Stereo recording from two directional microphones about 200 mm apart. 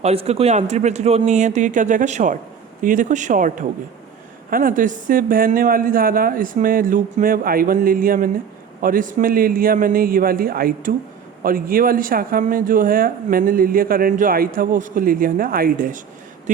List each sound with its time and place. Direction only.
0.0 s a man's voice: 30° right (ahead or behind)